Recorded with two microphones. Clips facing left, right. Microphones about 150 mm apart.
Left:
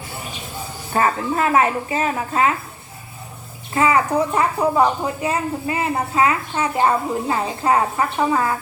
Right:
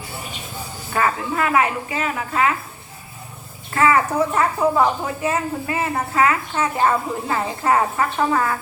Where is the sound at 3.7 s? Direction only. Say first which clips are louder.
Even; 20° left (ahead or behind).